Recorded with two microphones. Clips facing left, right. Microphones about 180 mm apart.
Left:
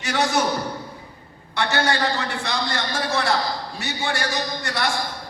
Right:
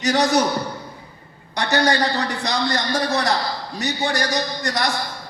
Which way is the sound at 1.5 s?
40° right (ahead or behind).